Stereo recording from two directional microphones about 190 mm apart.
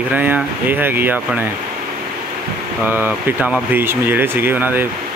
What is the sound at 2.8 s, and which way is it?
Speech, 10° right (ahead or behind).